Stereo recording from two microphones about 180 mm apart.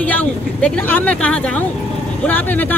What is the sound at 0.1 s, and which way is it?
Speech, 10° left (ahead or behind).